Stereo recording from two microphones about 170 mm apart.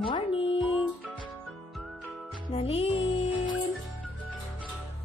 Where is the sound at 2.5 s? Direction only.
35° left (ahead or behind).